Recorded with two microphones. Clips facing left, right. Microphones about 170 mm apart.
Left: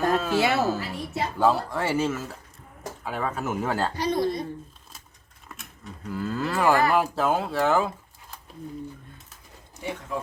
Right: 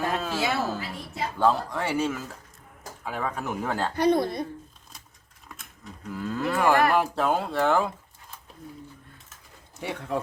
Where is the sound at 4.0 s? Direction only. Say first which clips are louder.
Right 2 dB; 55° right (ahead or behind).